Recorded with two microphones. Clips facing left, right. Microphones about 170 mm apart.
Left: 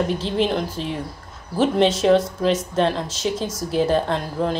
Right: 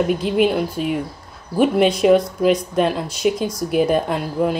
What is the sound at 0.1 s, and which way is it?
Speech, 10° right (ahead or behind).